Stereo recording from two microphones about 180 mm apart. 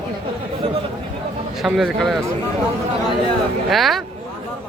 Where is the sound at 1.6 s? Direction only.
Centre (ahead or behind).